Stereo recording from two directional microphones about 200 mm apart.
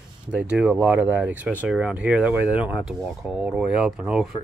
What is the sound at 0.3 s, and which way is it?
Speech, 5° right (ahead or behind).